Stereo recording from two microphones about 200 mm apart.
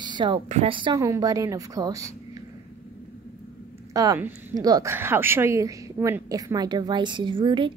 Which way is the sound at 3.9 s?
15° right (ahead or behind).